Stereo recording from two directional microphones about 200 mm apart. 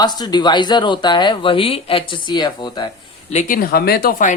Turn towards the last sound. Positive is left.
turn(degrees=45)  # may be behind; listen again after turning